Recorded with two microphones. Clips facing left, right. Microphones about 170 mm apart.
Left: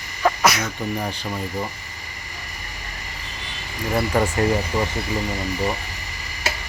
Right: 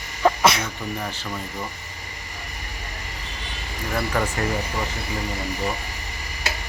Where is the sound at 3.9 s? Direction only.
25° left (ahead or behind).